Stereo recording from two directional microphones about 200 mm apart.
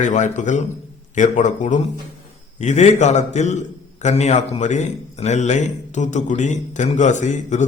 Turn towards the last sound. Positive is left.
turn(degrees=35)  # may be behind; listen again after turning